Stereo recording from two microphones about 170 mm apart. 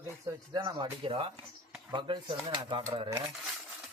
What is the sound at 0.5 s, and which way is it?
Speech, 30° right (ahead or behind).